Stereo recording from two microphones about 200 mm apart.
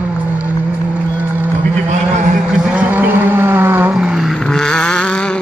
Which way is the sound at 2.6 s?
5° right (ahead or behind).